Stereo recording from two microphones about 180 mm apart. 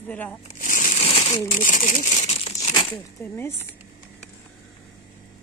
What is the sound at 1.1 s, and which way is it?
Crumpling, 30° left (ahead or behind).